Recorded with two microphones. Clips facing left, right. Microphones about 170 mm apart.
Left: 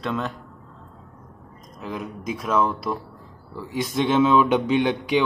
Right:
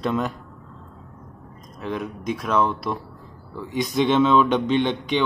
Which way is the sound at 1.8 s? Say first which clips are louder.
Right 3 dB; centre (ahead or behind).